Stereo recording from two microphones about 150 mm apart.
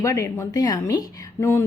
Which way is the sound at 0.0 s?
20° left (ahead or behind).